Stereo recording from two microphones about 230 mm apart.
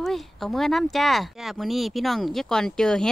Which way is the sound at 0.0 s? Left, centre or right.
Centre.